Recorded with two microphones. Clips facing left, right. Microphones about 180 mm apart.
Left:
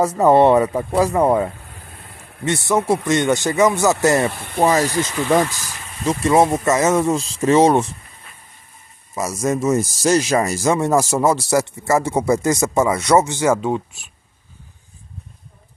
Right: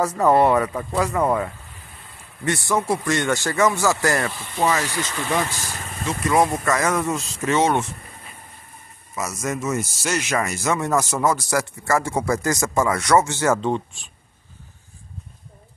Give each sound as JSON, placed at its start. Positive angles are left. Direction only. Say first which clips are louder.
{"t": 0.2, "sound": "speech", "louder": "left 4 dB", "side_deg": 25}
{"t": 4.3, "sound": "speech", "louder": "left 5 dB", "side_deg": 60}
{"t": 4.6, "sound": "speech", "louder": "left 6 dB", "side_deg": 40}
{"t": 5.6, "sound": "vehicle", "louder": "right 3 dB", "side_deg": -40}
{"t": 6.0, "sound": "speech", "louder": "left 5 dB", "side_deg": 25}
{"t": 9.1, "sound": "speech", "louder": "left 6 dB", "side_deg": 30}